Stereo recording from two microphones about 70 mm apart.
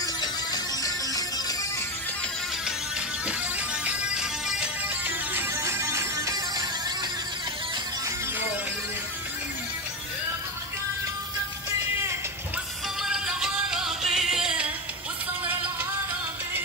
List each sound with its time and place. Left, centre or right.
0.0 s music: left
3.8 s music: centre
5.6 s music: right
13.0 s music: centre